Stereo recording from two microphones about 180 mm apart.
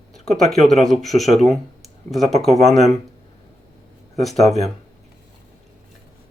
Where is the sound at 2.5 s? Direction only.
35° left (ahead or behind).